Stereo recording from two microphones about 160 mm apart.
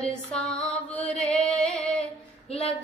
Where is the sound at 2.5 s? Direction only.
40° left (ahead or behind).